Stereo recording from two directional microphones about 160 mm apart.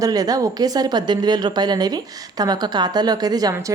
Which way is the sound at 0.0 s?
25° right (ahead or behind).